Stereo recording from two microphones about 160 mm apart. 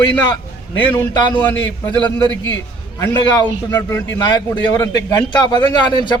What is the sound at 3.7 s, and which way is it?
A man's voice, 20° left (ahead or behind).